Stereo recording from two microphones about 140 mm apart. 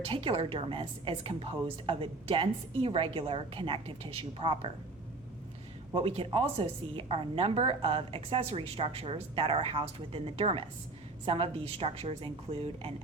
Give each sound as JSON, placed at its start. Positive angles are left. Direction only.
{"t": 0.0, "sound": "a woman's voice", "side_deg": -40}
{"t": 5.9, "sound": "a woman's voice", "side_deg": -40}